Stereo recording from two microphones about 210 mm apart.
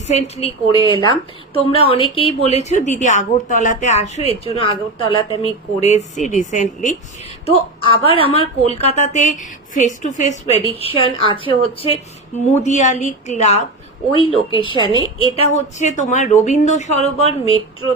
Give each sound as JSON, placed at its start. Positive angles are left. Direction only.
{"t": 0.1, "sound": "a woman's voice", "side_deg": 30}
{"t": 7.4, "sound": "a woman's voice", "side_deg": 25}
{"t": 15.4, "sound": "a woman's voice", "side_deg": 35}